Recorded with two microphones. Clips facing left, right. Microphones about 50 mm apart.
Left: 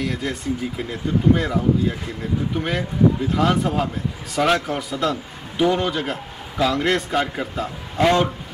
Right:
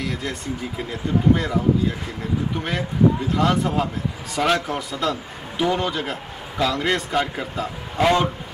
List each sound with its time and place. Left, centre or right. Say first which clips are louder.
0.0 s a man's voice: left 3 dB; centre